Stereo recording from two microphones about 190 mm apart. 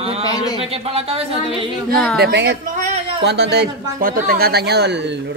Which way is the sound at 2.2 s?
60° right (ahead or behind).